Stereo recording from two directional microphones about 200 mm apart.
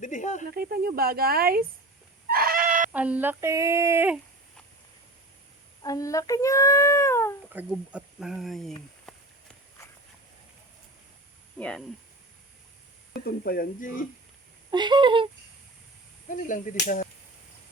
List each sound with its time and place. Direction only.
0.0 s snake: 40° left (ahead or behind)
0.5 s speech: 50° right (ahead or behind)
2.3 s chicken: 45° right (ahead or behind)
2.9 s speech: 5° right (ahead or behind)
5.8 s speech: 15° left (ahead or behind)
7.5 s speech: 5° right (ahead or behind)
11.5 s speech: 5° left (ahead or behind)
13.1 s speech: 50° left (ahead or behind)
14.7 s speech: 20° right (ahead or behind)
16.3 s speech: 40° left (ahead or behind)